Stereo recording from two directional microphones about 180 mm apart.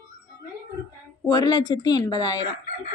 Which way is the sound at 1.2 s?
20° left (ahead or behind).